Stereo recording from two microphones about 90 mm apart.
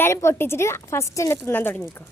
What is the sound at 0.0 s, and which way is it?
A woman's voice, 30° left (ahead or behind).